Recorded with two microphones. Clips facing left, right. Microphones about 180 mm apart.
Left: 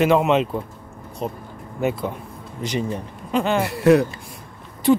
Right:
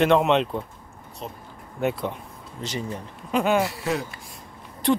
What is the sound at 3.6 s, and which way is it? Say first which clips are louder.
Speech: left 12 dB; 60° left (ahead or behind).